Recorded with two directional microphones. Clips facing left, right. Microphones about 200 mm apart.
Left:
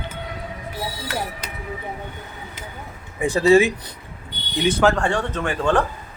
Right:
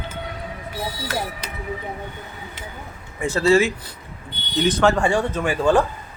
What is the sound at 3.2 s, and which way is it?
A man's voice, 15° left (ahead or behind).